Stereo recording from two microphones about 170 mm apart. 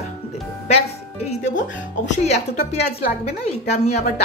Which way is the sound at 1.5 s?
50° left (ahead or behind).